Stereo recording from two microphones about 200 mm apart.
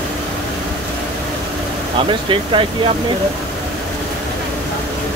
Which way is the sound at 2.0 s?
25° right (ahead or behind).